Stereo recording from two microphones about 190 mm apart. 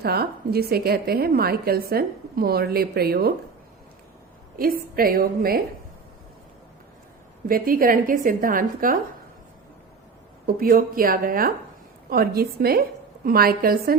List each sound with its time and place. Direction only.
0.0 s a woman's voice: 55° right (ahead or behind)
4.5 s a woman's voice: 50° right (ahead or behind)
7.4 s a woman's voice: 50° right (ahead or behind)
10.4 s a woman's voice: 50° right (ahead or behind)